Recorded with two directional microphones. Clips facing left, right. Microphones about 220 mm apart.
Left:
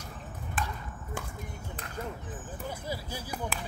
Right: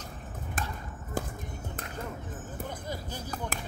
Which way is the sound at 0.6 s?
40° right (ahead or behind).